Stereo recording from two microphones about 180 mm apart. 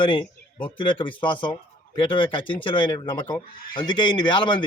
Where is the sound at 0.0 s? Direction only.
25° left (ahead or behind).